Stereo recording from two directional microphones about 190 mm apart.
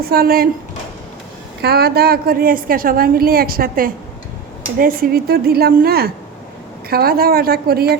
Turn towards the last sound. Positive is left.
turn(degrees=-55)  # may be behind; listen again after turning